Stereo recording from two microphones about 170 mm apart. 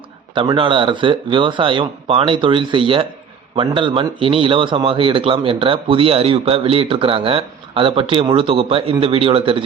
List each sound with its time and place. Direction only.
0.3 s speech: 30° right (ahead or behind)